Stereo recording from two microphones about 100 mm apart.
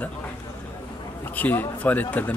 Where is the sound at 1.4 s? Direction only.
20° left (ahead or behind).